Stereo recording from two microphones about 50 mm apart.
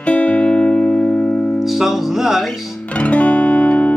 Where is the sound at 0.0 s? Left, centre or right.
Left.